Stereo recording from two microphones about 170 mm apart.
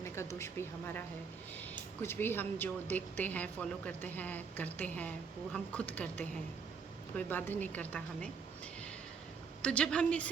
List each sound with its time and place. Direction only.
0.0 s a sound: 15° left (ahead or behind)
2.0 s a woman's voice: 15° left (ahead or behind)
7.2 s a woman's voice: 10° left (ahead or behind)
9.6 s a woman's voice: 5° left (ahead or behind)